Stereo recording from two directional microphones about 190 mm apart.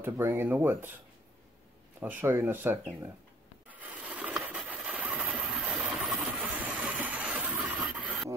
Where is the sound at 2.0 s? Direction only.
10° right (ahead or behind).